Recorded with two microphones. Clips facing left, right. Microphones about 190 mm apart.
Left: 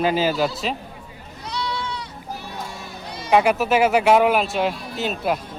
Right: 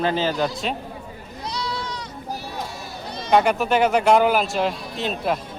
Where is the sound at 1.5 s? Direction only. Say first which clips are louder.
Left 2 dB; 40° right (ahead or behind).